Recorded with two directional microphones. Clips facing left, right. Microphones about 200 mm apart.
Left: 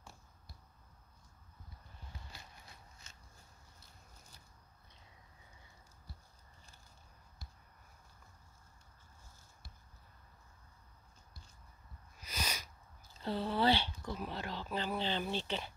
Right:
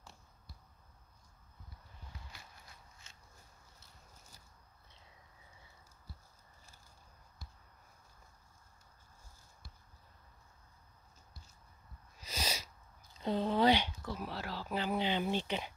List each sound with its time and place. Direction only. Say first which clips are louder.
12.2 s sneeze: right 2 dB; 25° right (ahead or behind)
13.2 s speech: right 3 dB; 20° right (ahead or behind)